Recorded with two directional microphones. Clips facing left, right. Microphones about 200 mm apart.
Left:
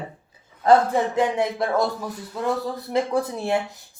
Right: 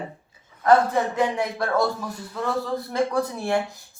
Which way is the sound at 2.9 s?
20° left (ahead or behind).